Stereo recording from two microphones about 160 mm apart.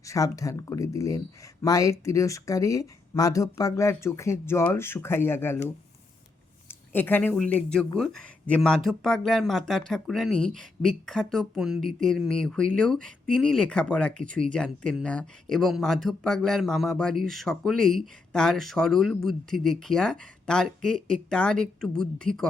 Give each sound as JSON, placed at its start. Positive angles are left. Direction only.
{"t": 0.0, "sound": "speech", "side_deg": 20}